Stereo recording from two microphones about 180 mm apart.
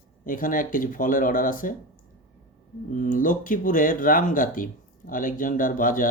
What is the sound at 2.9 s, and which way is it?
Speech, 45° left (ahead or behind).